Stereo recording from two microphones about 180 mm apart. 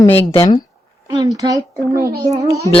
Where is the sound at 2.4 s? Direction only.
20° right (ahead or behind).